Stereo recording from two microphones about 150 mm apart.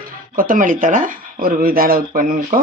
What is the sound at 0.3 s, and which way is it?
Speech, 65° right (ahead or behind).